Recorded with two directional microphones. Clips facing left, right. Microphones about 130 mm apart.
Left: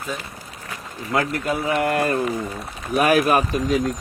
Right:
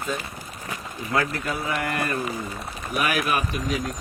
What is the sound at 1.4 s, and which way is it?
Speech, 20° left (ahead or behind).